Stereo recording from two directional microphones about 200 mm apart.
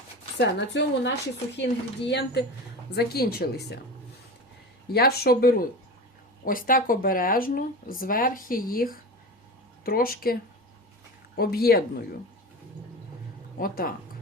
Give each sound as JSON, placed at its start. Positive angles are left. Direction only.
{"t": 0.3, "sound": "speech", "side_deg": 60}
{"t": 4.9, "sound": "speech", "side_deg": 50}
{"t": 11.3, "sound": "speech", "side_deg": 50}
{"t": 13.6, "sound": "speech", "side_deg": 45}